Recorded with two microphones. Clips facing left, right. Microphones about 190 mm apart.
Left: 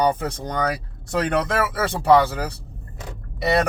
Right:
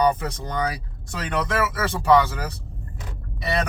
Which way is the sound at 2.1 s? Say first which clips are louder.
Left 2 dB; 35° left (ahead or behind).